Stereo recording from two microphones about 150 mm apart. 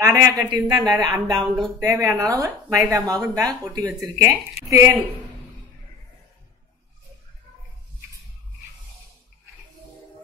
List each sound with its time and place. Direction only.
0.0 s speech: 20° right (ahead or behind)